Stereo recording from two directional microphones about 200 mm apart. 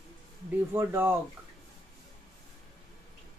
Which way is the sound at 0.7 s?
10° right (ahead or behind).